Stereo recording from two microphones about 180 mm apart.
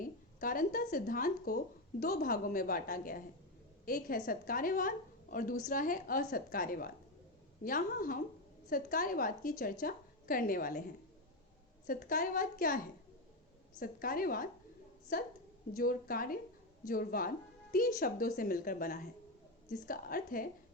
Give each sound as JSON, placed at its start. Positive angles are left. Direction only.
{"t": 0.0, "sound": "a woman's voice", "side_deg": 50}